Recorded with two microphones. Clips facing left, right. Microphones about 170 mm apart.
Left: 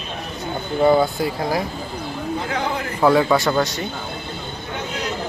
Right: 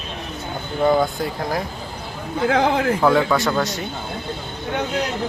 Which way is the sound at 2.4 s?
90° right.